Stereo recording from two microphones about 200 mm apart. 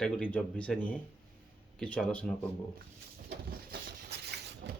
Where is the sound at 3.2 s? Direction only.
50° right (ahead or behind).